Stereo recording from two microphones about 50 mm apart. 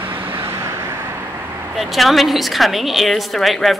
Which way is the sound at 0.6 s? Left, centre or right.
Right.